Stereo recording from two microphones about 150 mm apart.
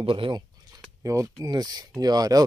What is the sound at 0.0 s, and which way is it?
Speech, 35° right (ahead or behind).